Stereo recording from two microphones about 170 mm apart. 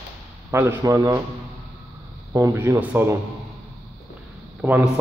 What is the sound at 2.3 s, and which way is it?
Speech, 15° right (ahead or behind).